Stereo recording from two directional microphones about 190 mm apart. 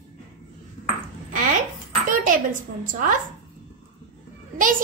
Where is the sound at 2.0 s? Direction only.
45° right (ahead or behind).